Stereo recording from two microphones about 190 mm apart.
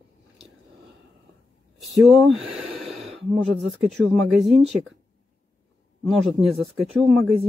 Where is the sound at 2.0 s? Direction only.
5° right (ahead or behind).